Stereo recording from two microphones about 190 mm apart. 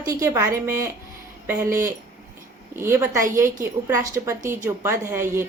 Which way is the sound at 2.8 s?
15° right (ahead or behind).